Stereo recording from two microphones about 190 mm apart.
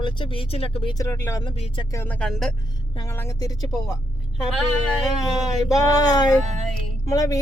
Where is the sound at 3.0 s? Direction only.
15° left (ahead or behind).